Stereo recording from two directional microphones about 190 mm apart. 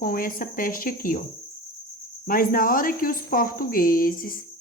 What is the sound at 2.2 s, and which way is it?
Speech, 50° left (ahead or behind).